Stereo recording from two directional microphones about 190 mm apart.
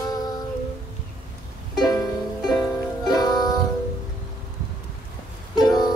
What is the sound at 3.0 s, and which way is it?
Music, 20° left (ahead or behind).